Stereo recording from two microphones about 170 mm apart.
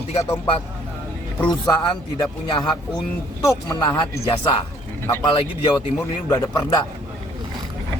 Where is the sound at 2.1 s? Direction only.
25° left (ahead or behind).